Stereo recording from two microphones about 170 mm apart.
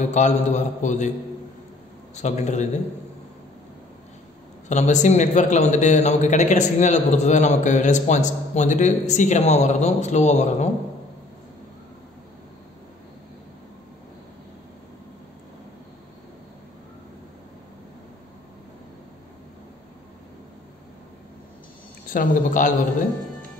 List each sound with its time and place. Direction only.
0.0 s a man's voice: 45° left (ahead or behind)
2.1 s a man's voice: 45° left (ahead or behind)
4.6 s a man's voice: 45° left (ahead or behind)
22.1 s a man's voice: 50° left (ahead or behind)